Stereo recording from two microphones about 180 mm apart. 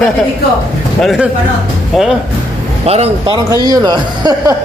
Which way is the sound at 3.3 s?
20° right (ahead or behind).